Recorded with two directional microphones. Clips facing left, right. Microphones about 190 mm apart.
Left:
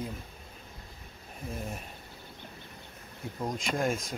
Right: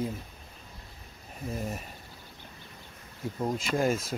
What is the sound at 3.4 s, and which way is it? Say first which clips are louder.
Speech: right 3 dB; 5° right (ahead or behind).